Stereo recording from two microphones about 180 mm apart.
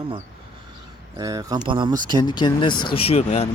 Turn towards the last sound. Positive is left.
turn(degrees=35)  # may be behind; listen again after turning